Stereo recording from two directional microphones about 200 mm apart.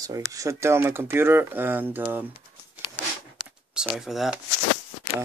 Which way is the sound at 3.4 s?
5° right (ahead or behind).